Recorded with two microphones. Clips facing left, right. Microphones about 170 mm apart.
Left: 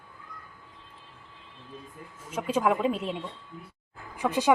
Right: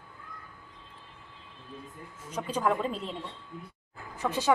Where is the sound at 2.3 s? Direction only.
5° left (ahead or behind).